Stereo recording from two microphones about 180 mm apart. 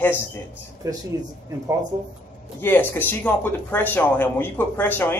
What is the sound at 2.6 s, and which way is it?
Speech, 10° left (ahead or behind).